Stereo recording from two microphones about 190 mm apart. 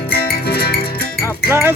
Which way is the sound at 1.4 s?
10° right (ahead or behind).